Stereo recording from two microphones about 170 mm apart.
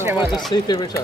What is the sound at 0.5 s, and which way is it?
Speech, 25° left (ahead or behind).